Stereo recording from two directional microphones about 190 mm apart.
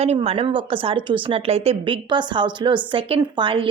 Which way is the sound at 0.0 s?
35° right (ahead or behind).